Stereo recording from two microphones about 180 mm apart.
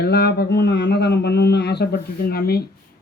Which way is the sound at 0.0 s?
70° left (ahead or behind).